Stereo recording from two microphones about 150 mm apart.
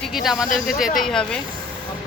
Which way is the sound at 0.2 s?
Centre (ahead or behind).